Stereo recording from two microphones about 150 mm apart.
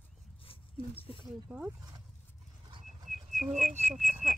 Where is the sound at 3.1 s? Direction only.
Centre (ahead or behind).